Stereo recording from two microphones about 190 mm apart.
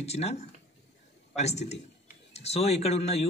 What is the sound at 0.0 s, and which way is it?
A man's voice, 35° left (ahead or behind).